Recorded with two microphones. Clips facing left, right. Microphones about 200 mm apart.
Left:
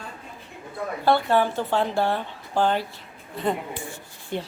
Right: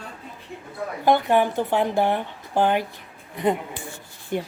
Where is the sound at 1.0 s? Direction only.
15° right (ahead or behind).